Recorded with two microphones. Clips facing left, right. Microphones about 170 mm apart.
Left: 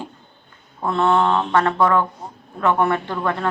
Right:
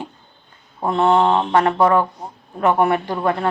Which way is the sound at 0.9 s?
15° right (ahead or behind).